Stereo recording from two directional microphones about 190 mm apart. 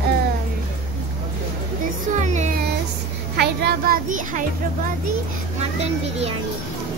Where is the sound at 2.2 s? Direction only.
40° right (ahead or behind).